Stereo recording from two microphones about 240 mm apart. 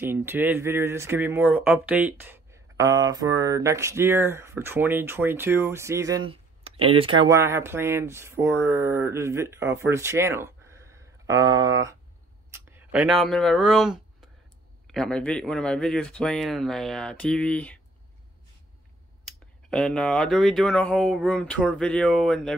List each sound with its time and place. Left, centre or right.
0.0 s speech: centre
12.4 s a sound: centre
14.9 s speech: centre
19.2 s speech: centre